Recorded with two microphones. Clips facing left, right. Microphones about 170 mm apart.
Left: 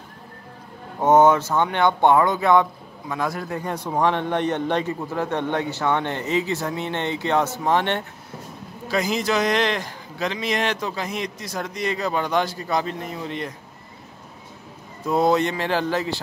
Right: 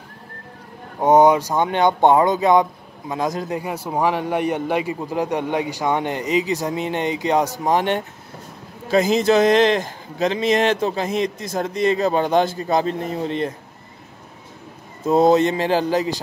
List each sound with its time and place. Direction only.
0.9 s a man's voice: 15° right (ahead or behind)
3.6 s a man's voice: 5° right (ahead or behind)
8.8 s a man's voice: 25° right (ahead or behind)
15.0 s a man's voice: 20° right (ahead or behind)